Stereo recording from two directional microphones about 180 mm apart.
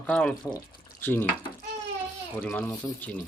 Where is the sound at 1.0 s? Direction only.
10° left (ahead or behind).